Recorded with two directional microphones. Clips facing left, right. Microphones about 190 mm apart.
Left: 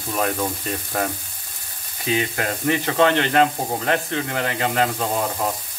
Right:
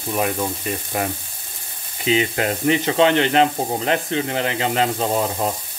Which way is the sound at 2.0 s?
20° right (ahead or behind).